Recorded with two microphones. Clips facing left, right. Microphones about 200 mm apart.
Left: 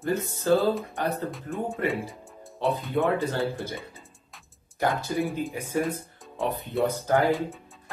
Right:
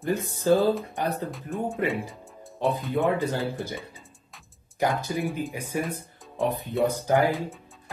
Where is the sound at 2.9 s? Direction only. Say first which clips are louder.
Even; 15° right (ahead or behind).